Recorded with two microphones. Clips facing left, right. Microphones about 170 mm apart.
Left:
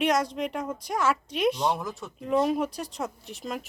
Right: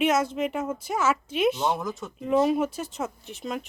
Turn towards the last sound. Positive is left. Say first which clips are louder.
# right 2 dB
turn(degrees=0)  # may be behind; listen again after turning